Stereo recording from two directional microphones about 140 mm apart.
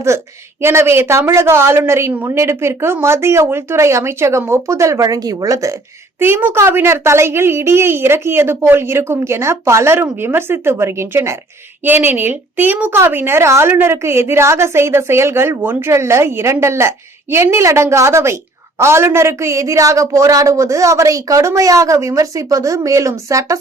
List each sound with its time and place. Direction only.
0.6 s a woman's voice: 15° right (ahead or behind)